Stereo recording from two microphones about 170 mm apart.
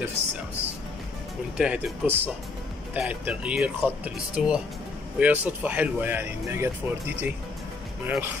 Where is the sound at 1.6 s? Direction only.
10° right (ahead or behind).